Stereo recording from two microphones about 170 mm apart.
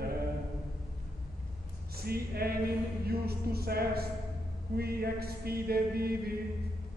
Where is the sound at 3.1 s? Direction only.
65° right (ahead or behind).